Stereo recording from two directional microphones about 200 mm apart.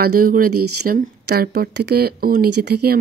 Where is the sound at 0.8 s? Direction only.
50° right (ahead or behind).